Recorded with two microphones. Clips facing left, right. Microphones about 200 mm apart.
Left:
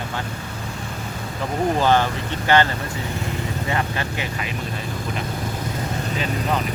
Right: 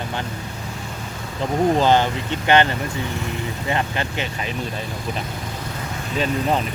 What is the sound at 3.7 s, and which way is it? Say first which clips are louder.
Speech: right 3 dB; 25° right (ahead or behind).